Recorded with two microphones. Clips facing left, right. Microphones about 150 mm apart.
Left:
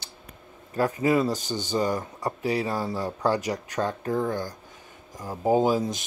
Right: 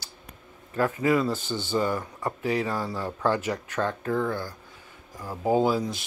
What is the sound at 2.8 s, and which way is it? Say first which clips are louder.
Speech: left 1 dB; 15° left (ahead or behind).